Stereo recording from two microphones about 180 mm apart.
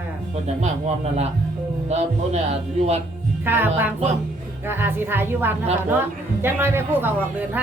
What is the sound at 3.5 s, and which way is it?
A man's voice, 10° right (ahead or behind).